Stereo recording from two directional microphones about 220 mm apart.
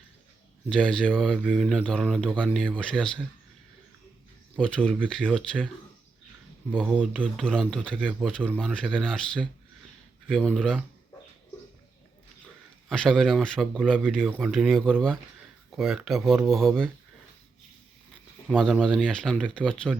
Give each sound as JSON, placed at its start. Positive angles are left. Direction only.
{"t": 0.7, "sound": "speech", "side_deg": 5}
{"t": 4.5, "sound": "speech", "side_deg": 5}
{"t": 6.9, "sound": "speech", "side_deg": 5}
{"t": 12.9, "sound": "speech", "side_deg": 0}
{"t": 18.4, "sound": "speech", "side_deg": 0}